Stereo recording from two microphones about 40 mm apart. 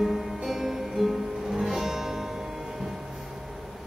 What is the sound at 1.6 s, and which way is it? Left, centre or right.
Music, centre.